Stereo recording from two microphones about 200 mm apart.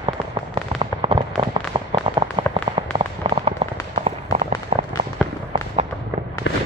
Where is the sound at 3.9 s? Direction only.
35° right (ahead or behind).